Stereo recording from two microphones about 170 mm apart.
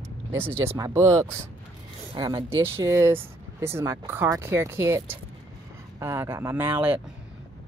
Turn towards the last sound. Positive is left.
turn(degrees=-10)  # may be behind; listen again after turning